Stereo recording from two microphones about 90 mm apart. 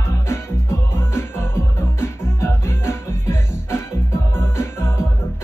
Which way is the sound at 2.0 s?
30° left (ahead or behind).